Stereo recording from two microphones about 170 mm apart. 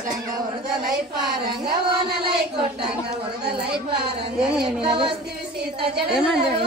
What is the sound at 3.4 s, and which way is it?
Speech, 70° right (ahead or behind).